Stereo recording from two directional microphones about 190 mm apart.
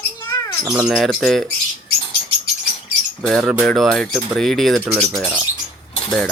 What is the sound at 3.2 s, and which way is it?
Speech, centre (ahead or behind).